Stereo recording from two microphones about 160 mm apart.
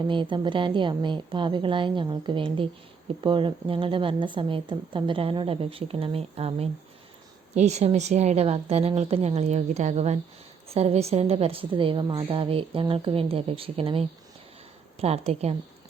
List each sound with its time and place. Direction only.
0.0 s a woman's voice: 30° right (ahead or behind)